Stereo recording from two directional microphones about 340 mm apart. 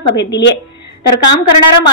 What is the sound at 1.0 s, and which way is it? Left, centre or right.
Speech, left.